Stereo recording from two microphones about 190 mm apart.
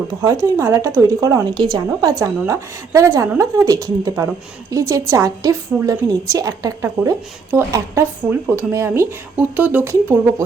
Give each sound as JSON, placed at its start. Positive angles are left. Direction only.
{"t": 0.5, "sound": "a woman's voice", "side_deg": -15}